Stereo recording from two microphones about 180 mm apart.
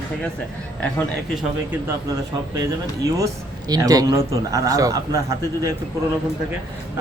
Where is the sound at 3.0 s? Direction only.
20° right (ahead or behind).